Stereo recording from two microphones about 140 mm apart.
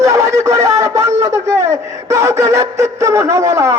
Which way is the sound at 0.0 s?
20° right (ahead or behind).